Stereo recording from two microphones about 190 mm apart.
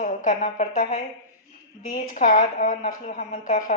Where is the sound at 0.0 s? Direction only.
40° left (ahead or behind).